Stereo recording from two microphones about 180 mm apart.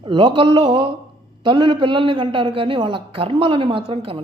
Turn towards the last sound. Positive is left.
turn(degrees=-30)  # may be behind; listen again after turning